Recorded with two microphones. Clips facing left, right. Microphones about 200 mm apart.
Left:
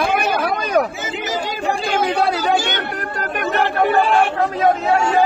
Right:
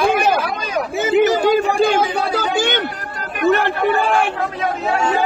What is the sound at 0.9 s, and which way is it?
Speech, 65° right (ahead or behind).